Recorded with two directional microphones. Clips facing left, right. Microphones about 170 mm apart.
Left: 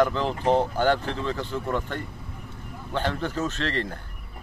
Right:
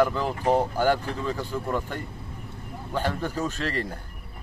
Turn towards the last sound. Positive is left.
turn(degrees=-10)  # may be behind; listen again after turning